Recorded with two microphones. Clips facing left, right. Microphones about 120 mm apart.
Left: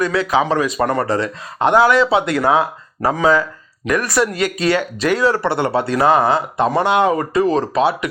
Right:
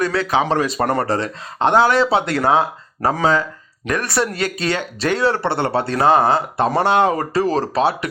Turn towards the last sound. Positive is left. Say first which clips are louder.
# left 2 dB
turn(degrees=-30)  # may be behind; listen again after turning